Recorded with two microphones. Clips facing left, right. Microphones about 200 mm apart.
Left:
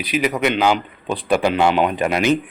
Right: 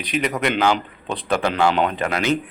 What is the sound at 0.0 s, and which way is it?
Speech, 5° left (ahead or behind).